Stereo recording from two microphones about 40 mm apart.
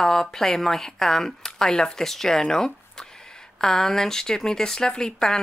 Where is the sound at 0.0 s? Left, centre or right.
Centre.